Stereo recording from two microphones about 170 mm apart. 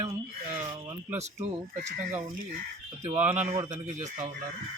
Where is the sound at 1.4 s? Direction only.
45° right (ahead or behind).